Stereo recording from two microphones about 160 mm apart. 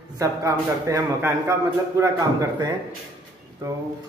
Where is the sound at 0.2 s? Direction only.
20° right (ahead or behind).